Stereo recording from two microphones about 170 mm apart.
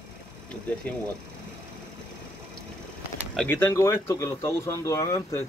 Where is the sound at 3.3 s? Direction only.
10° left (ahead or behind).